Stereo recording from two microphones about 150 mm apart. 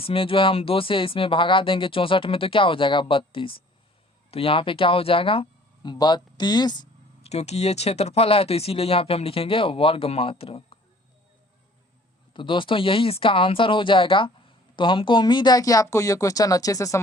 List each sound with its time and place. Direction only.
0.0 s speech: 35° left (ahead or behind)
7.2 s speech: 45° left (ahead or behind)
12.3 s speech: 35° left (ahead or behind)